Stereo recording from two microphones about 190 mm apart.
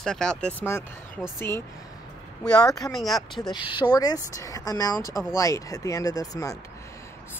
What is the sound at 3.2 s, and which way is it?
Speech, 20° left (ahead or behind).